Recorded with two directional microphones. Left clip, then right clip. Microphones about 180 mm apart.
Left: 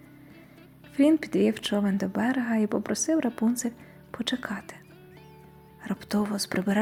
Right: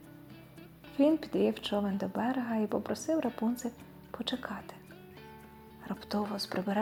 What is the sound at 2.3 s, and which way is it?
Speech, 45° left (ahead or behind).